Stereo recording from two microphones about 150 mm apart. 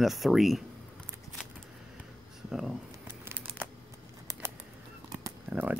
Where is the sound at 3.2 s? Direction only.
15° right (ahead or behind).